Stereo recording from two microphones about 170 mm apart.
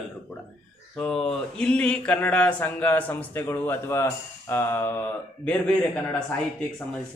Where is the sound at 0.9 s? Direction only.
5° left (ahead or behind).